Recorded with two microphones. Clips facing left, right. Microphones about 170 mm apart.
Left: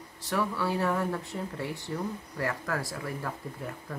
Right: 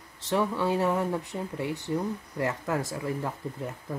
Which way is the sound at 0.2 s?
20° right (ahead or behind).